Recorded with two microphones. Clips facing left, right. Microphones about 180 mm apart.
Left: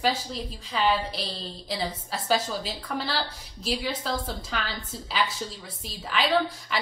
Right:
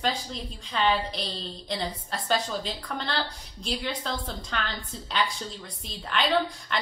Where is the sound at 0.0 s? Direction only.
5° left (ahead or behind).